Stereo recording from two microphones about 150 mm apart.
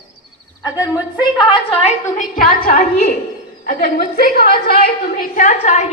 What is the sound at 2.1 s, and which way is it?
Speech, 70° left (ahead or behind).